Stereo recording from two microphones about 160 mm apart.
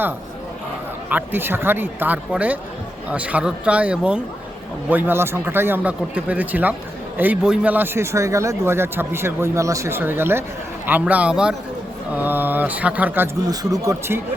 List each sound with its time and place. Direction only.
1.1 s speech: 15° right (ahead or behind)
13.5 s speech: 25° right (ahead or behind)